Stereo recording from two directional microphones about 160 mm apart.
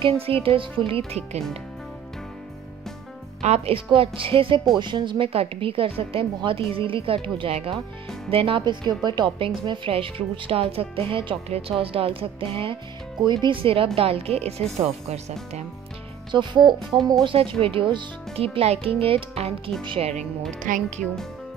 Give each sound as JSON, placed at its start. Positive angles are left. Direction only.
{"t": 0.0, "sound": "a woman's voice", "side_deg": -35}
{"t": 3.4, "sound": "a woman's voice", "side_deg": -40}
{"t": 16.3, "sound": "speech", "side_deg": -30}
{"t": 16.9, "sound": "speech", "side_deg": 0}
{"t": 17.2, "sound": "a woman's voice", "side_deg": -35}
{"t": 20.7, "sound": "speech", "side_deg": -55}
{"t": 21.0, "sound": "speech", "side_deg": 5}